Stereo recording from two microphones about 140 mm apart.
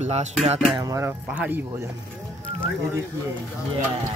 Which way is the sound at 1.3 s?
10° right (ahead or behind).